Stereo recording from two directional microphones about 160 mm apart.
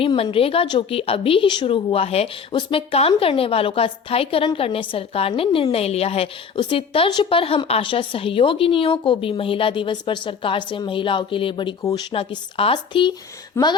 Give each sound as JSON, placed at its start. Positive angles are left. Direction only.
{"t": 0.0, "sound": "a woman's voice", "side_deg": 35}
{"t": 12.1, "sound": "a woman's voice", "side_deg": 35}
{"t": 13.6, "sound": "a sound", "side_deg": 15}